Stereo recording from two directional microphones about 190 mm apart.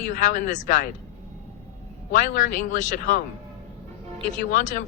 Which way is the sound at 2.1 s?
40° left (ahead or behind).